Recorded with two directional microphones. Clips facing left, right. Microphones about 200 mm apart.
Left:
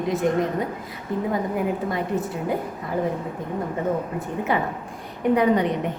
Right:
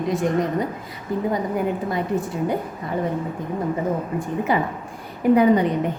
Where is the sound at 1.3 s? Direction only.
Centre (ahead or behind).